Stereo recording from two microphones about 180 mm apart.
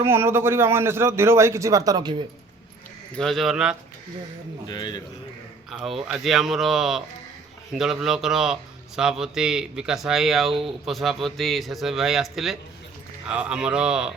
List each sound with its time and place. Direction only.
0.0 s a man's voice: 15° right (ahead or behind)
3.2 s a man's voice: centre (ahead or behind)
4.7 s a man's voice: 20° left (ahead or behind)
5.7 s a man's voice: centre (ahead or behind)